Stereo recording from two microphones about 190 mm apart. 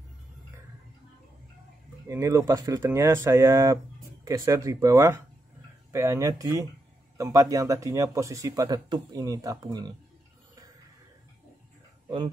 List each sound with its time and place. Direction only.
2.0 s speech: 15° right (ahead or behind)